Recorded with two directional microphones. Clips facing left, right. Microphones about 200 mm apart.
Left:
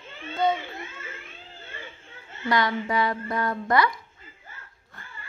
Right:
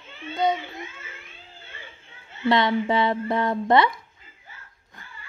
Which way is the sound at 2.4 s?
25° right (ahead or behind).